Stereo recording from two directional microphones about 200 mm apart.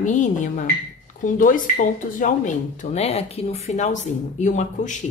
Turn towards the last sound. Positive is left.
turn(degrees=40)  # may be behind; listen again after turning